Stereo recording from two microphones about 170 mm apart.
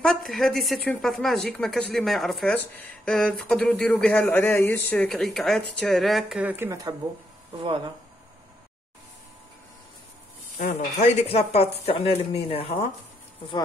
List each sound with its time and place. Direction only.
0.3 s speech: centre (ahead or behind); by 7.0 s 20° right (ahead or behind)
7.6 s speech: 30° right (ahead or behind)
10.6 s speech: 40° left (ahead or behind)